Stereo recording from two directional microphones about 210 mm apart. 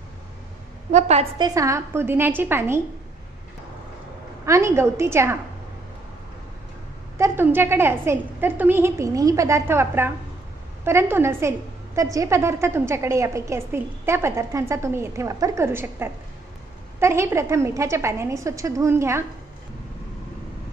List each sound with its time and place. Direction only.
0.9 s a woman's voice: 30° right (ahead or behind)
1.4 s a woman's voice: 15° right (ahead or behind)
4.5 s a woman's voice: 15° right (ahead or behind)
7.2 s a woman's voice: 10° right (ahead or behind)